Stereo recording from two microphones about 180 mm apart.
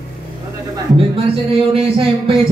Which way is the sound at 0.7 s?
30° right (ahead or behind).